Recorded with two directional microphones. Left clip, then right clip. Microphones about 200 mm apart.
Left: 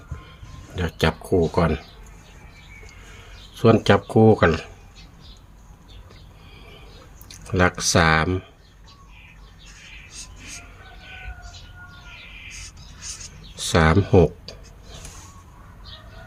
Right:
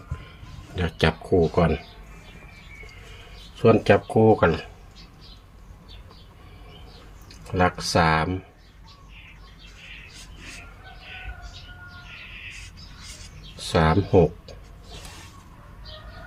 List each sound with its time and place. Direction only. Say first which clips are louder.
0.8 s speech: even; 10° left (ahead or behind)
3.6 s speech: left 1 dB; 30° left (ahead or behind)
7.3 s speech: left 2 dB; 40° left (ahead or behind)
13.6 s a sound: left 2 dB; 40° left (ahead or behind)